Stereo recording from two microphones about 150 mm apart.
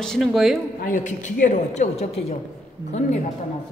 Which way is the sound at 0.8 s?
60° left (ahead or behind).